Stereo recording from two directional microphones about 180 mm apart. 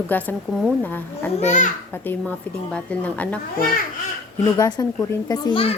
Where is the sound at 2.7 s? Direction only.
5° left (ahead or behind).